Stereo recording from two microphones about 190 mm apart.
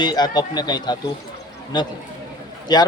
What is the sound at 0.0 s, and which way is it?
Speech, 20° left (ahead or behind).